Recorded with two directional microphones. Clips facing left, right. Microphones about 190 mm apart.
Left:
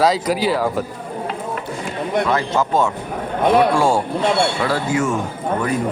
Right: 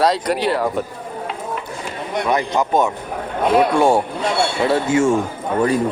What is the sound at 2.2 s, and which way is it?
A man's voice, 15° right (ahead or behind).